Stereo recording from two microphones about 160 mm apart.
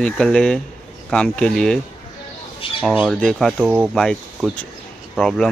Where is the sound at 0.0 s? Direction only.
5° left (ahead or behind).